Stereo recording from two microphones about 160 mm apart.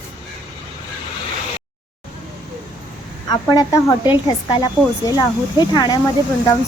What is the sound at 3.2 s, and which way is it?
A woman's voice, 25° left (ahead or behind).